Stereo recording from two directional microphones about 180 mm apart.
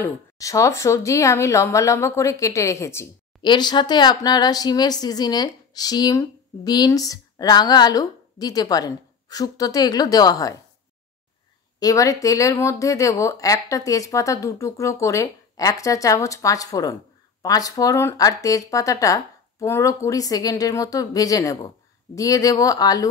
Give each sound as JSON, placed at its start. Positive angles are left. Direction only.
{"t": 0.0, "sound": "a woman's voice", "side_deg": 15}
{"t": 11.8, "sound": "a woman's voice", "side_deg": 20}